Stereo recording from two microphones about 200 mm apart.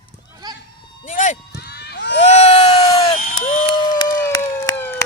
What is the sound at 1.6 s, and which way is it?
Run, 55° left (ahead or behind).